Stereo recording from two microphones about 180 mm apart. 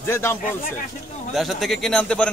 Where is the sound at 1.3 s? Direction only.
Centre (ahead or behind).